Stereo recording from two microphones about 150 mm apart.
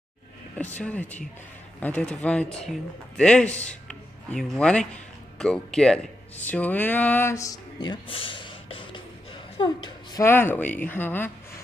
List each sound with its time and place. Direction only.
0.6 s a man's voice: 10° left (ahead or behind)
6.4 s a sound: 10° left (ahead or behind); by 10.2 s 30° left (ahead or behind)
10.2 s speech: 15° left (ahead or behind)